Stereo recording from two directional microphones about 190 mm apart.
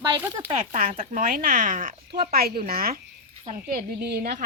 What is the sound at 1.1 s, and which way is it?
A woman's voice, 45° right (ahead or behind).